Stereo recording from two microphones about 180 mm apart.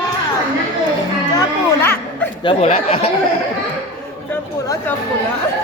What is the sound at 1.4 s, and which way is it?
Speech, 10° left (ahead or behind).